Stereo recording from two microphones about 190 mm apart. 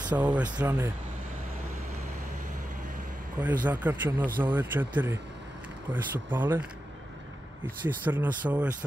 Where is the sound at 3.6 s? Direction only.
10° right (ahead or behind).